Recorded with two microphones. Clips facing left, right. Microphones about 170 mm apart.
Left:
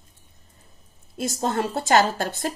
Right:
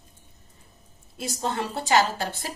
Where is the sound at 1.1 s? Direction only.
45° left (ahead or behind).